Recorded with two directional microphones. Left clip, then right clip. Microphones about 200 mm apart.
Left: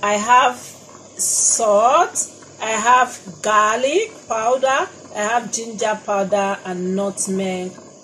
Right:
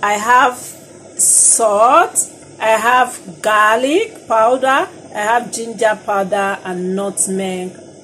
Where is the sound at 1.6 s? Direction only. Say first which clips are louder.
Right 4 dB; 20° right (ahead or behind).